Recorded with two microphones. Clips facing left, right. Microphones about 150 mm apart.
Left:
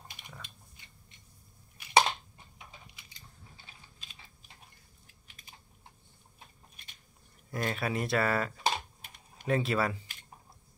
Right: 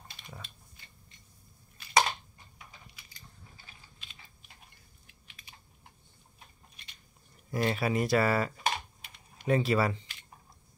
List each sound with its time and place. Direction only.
2.0 s a sound: 25° left (ahead or behind)
7.5 s speech: 5° right (ahead or behind)
8.6 s typing: 45° left (ahead or behind)
9.5 s speech: centre (ahead or behind)